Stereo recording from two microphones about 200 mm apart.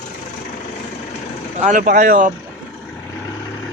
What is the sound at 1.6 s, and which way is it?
Speech, 40° right (ahead or behind).